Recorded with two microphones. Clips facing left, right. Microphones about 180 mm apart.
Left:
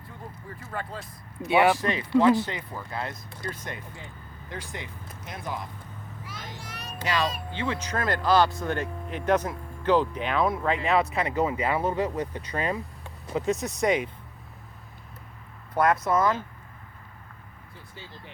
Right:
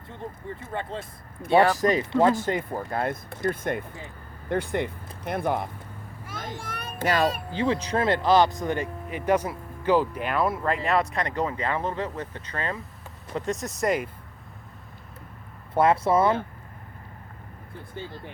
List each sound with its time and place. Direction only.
0.1 s speech: 25° right (ahead or behind)
1.8 s a child's voice: 40° right (ahead or behind)
7.5 s speech: 35° right (ahead or behind); by 12.8 s 15° left (ahead or behind)
13.3 s speech: centre (ahead or behind)
15.7 s speech: 25° right (ahead or behind)